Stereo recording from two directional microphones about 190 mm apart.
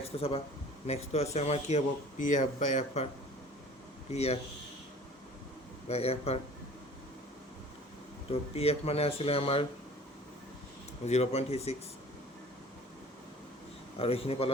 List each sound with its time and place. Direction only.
0.2 s speech: 30° left (ahead or behind)
4.1 s speech: 35° left (ahead or behind)
5.9 s speech: 35° left (ahead or behind)
8.3 s speech: 30° left (ahead or behind)
11.0 s speech: 35° left (ahead or behind)
14.0 s speech: 30° left (ahead or behind)